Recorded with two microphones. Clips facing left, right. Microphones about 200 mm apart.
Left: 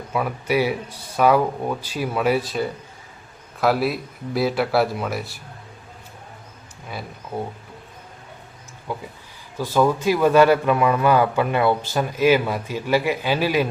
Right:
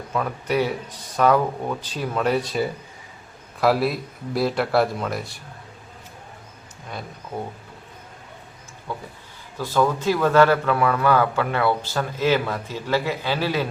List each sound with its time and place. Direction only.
0.1 s a man's voice: 10° left (ahead or behind)
8.9 s a man's voice: 10° left (ahead or behind)